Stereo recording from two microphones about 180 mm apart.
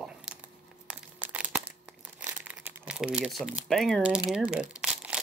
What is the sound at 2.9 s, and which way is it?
Speech, 5° right (ahead or behind).